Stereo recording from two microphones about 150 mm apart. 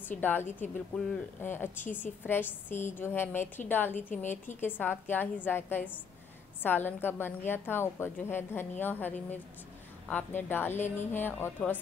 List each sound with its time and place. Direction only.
0.2 s a woman's voice: 10° left (ahead or behind)
3.9 s a woman's voice: 55° left (ahead or behind)
4.6 s a woman's voice: 15° left (ahead or behind)